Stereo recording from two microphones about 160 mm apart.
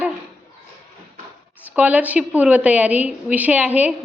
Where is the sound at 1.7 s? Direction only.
10° right (ahead or behind).